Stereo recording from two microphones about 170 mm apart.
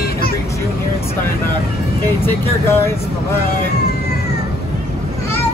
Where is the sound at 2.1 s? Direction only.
15° left (ahead or behind).